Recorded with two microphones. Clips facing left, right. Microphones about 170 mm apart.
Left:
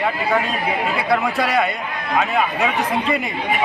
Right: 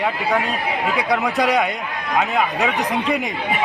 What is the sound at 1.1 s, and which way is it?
Speech, 15° right (ahead or behind).